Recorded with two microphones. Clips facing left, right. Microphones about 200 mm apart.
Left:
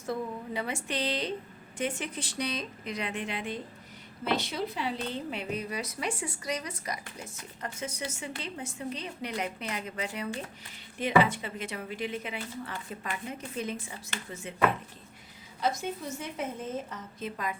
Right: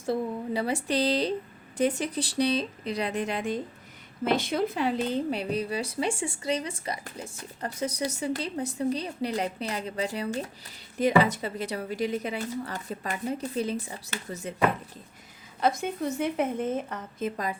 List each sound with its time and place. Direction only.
0.0 s speech: 30° right (ahead or behind); by 4.9 s 50° right (ahead or behind)
5.3 s speech: 35° right (ahead or behind)
15.6 s a woman's voice: 55° right (ahead or behind); by 17.6 s 40° right (ahead or behind)